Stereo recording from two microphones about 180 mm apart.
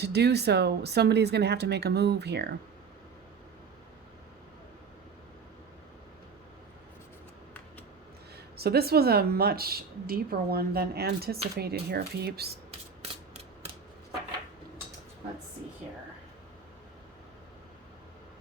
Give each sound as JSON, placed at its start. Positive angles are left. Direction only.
{"t": 0.0, "sound": "a woman's voice", "side_deg": -65}
{"t": 8.5, "sound": "a woman's voice", "side_deg": -60}